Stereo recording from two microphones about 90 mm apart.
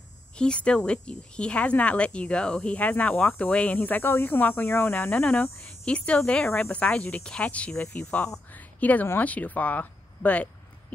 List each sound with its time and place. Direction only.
0.4 s a woman's voice: 10° left (ahead or behind)